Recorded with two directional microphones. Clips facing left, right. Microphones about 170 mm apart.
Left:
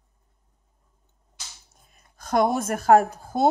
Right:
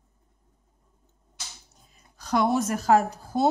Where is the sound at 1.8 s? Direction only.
55° left (ahead or behind).